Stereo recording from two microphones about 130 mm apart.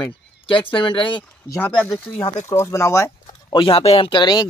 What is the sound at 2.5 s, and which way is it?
Speech, 20° left (ahead or behind).